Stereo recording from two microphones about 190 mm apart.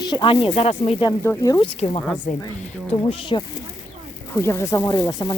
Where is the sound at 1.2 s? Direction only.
15° left (ahead or behind).